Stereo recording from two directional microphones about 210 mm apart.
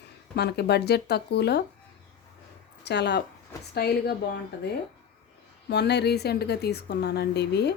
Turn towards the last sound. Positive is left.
turn(degrees=50)  # may be behind; listen again after turning